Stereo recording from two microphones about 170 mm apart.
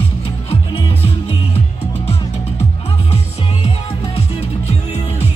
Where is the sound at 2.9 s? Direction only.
40° left (ahead or behind).